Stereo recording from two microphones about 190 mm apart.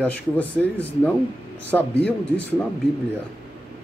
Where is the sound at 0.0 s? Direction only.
5° left (ahead or behind).